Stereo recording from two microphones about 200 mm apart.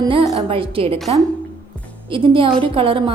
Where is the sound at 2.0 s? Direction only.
25° right (ahead or behind).